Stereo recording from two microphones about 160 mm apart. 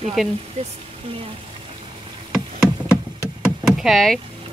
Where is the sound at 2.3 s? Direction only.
5° right (ahead or behind).